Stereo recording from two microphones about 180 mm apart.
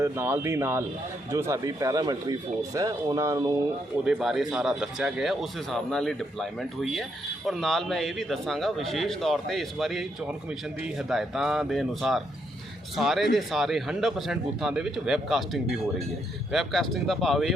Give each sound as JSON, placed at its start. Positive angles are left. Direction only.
{"t": 0.0, "sound": "speech", "side_deg": -10}
{"t": 4.0, "sound": "speech", "side_deg": 0}